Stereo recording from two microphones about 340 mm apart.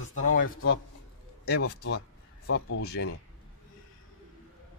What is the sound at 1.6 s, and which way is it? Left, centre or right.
Speech, left.